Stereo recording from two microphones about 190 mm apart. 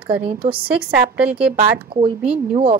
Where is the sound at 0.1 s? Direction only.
35° right (ahead or behind).